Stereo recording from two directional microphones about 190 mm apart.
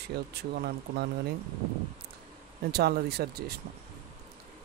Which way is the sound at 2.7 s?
55° right (ahead or behind).